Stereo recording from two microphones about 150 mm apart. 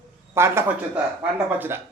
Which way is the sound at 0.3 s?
15° right (ahead or behind).